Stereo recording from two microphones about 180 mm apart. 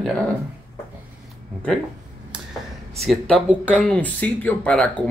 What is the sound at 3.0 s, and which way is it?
Speech, centre (ahead or behind).